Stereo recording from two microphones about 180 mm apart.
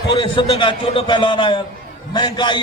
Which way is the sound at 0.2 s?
30° left (ahead or behind).